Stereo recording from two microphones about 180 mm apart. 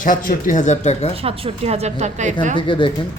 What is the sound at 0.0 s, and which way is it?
Speech, 50° left (ahead or behind).